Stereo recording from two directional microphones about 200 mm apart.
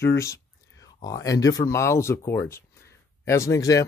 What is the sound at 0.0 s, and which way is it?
Speech, 15° left (ahead or behind).